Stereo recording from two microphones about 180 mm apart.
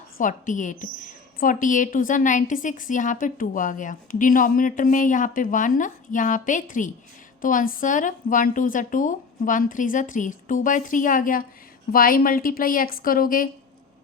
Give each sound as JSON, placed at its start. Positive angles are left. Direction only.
{"t": 0.2, "sound": "a woman's voice", "side_deg": 45}